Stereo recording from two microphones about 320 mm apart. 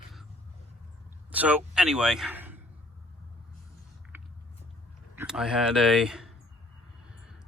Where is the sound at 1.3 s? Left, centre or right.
Centre.